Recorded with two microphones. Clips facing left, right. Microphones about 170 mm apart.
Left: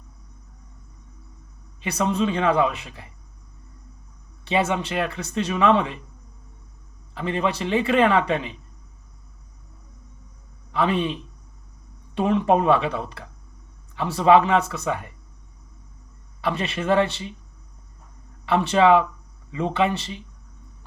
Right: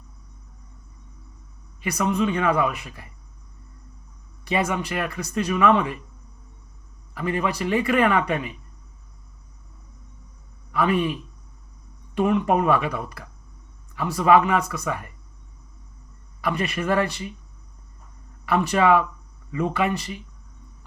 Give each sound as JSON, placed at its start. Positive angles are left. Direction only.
{"t": 1.8, "sound": "speech", "side_deg": 30}
{"t": 4.4, "sound": "speech", "side_deg": 25}
{"t": 7.1, "sound": "speech", "side_deg": 25}
{"t": 10.7, "sound": "a man's voice", "side_deg": 25}
{"t": 16.4, "sound": "speech", "side_deg": 30}
{"t": 18.4, "sound": "speech", "side_deg": 25}